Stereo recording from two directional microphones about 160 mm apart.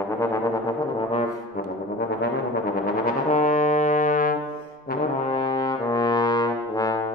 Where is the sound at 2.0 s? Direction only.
90° left; by 4.4 s 55° left (ahead or behind).